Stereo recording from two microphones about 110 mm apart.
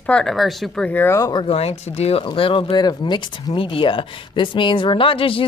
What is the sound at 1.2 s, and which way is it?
Speech, 40° left (ahead or behind).